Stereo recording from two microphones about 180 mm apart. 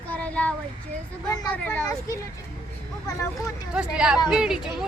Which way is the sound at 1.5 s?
5° left (ahead or behind).